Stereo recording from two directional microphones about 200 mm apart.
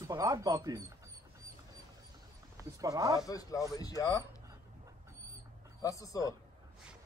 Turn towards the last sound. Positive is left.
turn(degrees=15)  # may be behind; listen again after turning